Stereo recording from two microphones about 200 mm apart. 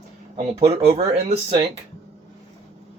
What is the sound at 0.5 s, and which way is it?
Speech, 20° right (ahead or behind).